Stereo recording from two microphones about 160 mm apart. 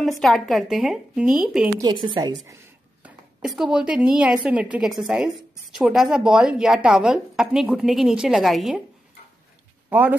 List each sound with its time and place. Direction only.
0.2 s a woman's voice: centre (ahead or behind)
1.8 s a woman's voice: 25° right (ahead or behind)
3.0 s a woman's voice: 5° right (ahead or behind)
9.8 s speech: 10° right (ahead or behind)